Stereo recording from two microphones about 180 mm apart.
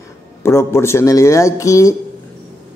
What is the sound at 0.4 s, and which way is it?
Speech, 15° left (ahead or behind).